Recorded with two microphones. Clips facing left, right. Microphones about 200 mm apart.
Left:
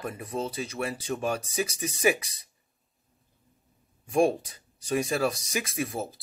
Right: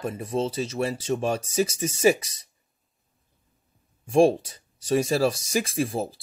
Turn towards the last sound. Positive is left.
turn(degrees=-30)  # may be behind; listen again after turning